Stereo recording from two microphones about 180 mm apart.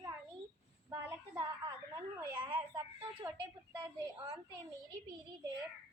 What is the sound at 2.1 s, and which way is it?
Speech, 25° right (ahead or behind).